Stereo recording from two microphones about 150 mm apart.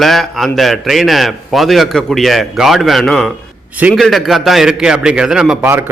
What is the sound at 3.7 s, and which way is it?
Speech, 10° right (ahead or behind).